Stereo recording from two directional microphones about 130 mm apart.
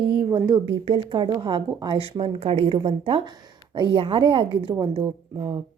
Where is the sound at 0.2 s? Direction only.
30° right (ahead or behind).